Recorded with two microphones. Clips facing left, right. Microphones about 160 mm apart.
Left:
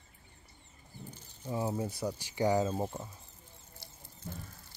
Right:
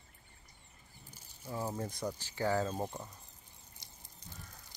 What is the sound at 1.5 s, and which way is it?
Speech, 10° left (ahead or behind).